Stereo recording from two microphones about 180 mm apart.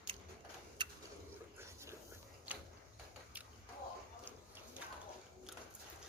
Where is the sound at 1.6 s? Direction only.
15° right (ahead or behind).